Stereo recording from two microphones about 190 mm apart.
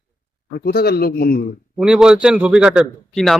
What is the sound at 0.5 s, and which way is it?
Speech, 55° left (ahead or behind).